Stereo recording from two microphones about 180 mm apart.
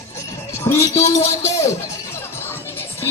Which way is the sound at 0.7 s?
15° left (ahead or behind).